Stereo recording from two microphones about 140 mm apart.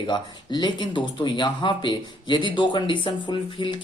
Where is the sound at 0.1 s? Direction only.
30° left (ahead or behind).